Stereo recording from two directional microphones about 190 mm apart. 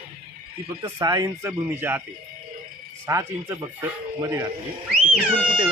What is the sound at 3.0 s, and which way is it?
Speech, 15° right (ahead or behind).